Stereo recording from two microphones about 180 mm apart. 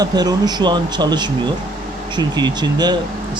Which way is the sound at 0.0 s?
20° right (ahead or behind).